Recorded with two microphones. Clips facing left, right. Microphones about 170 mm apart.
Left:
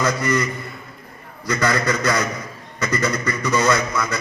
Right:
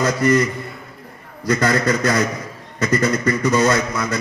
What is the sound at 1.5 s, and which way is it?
A man's voice, 50° right (ahead or behind).